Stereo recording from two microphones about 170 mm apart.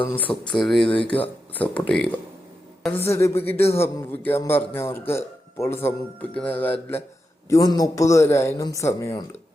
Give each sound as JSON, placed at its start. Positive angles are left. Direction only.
{"t": 0.0, "sound": "a man's voice", "side_deg": 10}
{"t": 7.5, "sound": "speech", "side_deg": 20}